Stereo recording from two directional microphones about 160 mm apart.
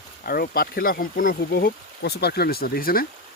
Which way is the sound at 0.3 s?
65° left (ahead or behind).